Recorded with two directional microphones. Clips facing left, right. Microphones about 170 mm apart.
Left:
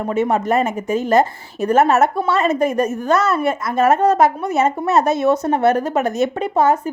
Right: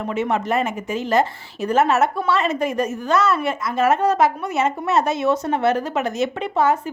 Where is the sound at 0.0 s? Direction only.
45° left (ahead or behind).